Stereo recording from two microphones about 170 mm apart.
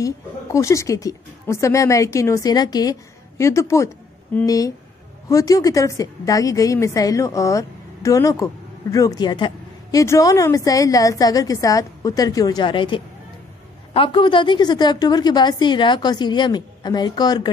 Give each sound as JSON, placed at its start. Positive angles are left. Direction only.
{"t": 0.0, "sound": "a woman's voice", "side_deg": 20}